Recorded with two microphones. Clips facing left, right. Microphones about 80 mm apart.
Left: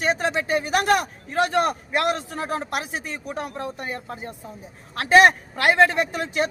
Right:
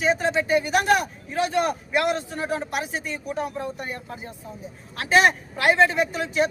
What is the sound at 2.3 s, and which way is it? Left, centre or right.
Speech, left.